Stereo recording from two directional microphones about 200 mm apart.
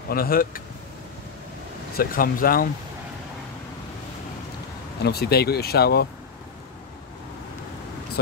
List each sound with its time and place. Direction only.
0.1 s speech: 45° left (ahead or behind)
2.0 s speech: 45° left (ahead or behind)
5.0 s speech: 50° left (ahead or behind)